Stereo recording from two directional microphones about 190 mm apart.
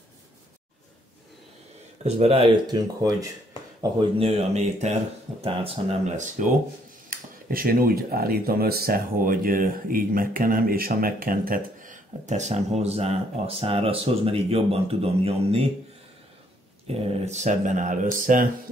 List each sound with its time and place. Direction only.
2.0 s speech: 30° right (ahead or behind)
2.7 s speech: 20° right (ahead or behind)
4.2 s speech: 30° right (ahead or behind)
7.1 s speech: 50° right (ahead or behind); by 15.7 s 30° right (ahead or behind)
16.8 s speech: 35° right (ahead or behind)